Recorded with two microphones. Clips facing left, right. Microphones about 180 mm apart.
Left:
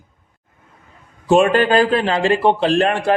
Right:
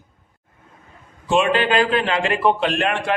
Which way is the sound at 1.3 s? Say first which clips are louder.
Left 5 dB; 45° left (ahead or behind).